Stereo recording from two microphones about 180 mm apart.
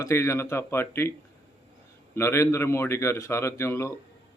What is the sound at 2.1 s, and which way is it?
Speech, 15° left (ahead or behind).